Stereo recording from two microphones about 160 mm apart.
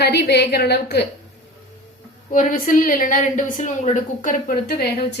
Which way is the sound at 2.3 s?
55° left (ahead or behind).